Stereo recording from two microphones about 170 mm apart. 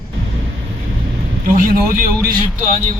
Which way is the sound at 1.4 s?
55° right (ahead or behind).